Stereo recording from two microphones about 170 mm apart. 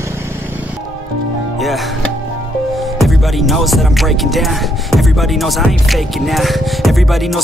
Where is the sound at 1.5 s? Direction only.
Centre (ahead or behind).